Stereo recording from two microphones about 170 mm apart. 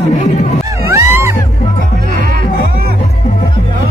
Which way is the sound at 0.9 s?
15° right (ahead or behind).